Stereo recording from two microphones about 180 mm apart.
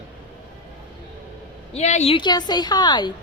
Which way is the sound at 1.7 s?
40° left (ahead or behind).